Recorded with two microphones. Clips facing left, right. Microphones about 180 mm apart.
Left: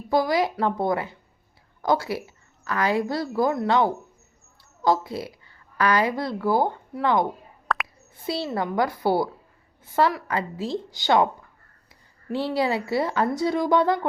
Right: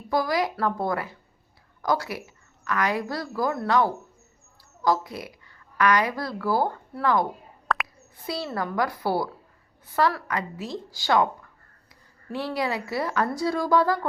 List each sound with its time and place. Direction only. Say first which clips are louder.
0.1 s a woman's voice: left 3 dB; 25° left (ahead or behind)
7.7 s plop: even; centre (ahead or behind)
8.4 s a woman's voice: left 2 dB; 20° left (ahead or behind)
11.9 s a sound: left 5 dB; 25° left (ahead or behind)
12.5 s a woman's voice: left 4 dB; 25° left (ahead or behind)